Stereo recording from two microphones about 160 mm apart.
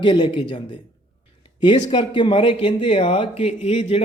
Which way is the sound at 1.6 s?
30° left (ahead or behind).